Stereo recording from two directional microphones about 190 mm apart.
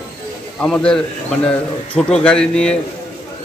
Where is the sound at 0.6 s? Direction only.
5° left (ahead or behind).